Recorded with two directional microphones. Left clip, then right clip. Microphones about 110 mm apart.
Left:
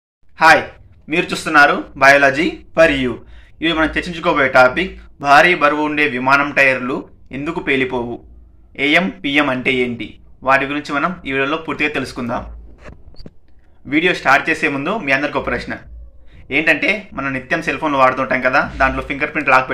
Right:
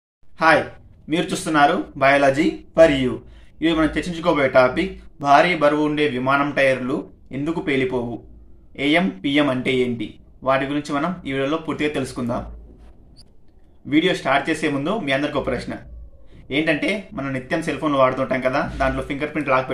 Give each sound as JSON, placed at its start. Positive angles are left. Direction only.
{"t": 1.0, "sound": "a man's voice", "side_deg": -25}
{"t": 13.8, "sound": "a man's voice", "side_deg": -25}